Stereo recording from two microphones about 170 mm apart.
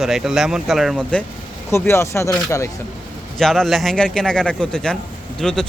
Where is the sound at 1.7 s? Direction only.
15° left (ahead or behind).